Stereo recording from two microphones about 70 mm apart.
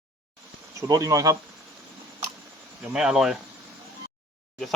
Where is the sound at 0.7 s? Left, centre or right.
Right.